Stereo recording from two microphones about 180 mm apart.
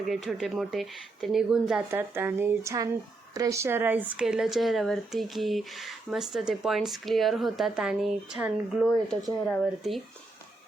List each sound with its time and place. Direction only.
0.3 s speech: centre (ahead or behind)